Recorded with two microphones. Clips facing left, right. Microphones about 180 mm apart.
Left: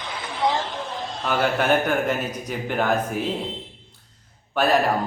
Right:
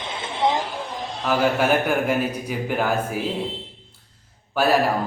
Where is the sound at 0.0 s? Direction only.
25° right (ahead or behind).